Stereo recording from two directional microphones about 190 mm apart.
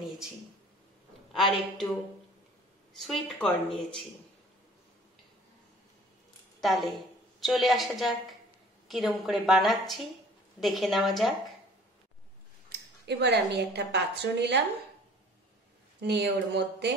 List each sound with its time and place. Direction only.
1.3 s a woman's voice: centre (ahead or behind)
3.0 s a woman's voice: centre (ahead or behind)
6.6 s a woman's voice: centre (ahead or behind)
12.6 s a woman's voice: 60° right (ahead or behind)
16.0 s speech: 65° right (ahead or behind)